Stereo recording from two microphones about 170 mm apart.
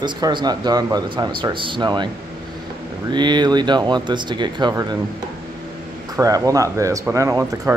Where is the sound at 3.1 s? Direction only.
25° right (ahead or behind).